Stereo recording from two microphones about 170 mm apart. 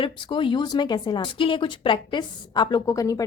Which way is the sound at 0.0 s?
30° left (ahead or behind).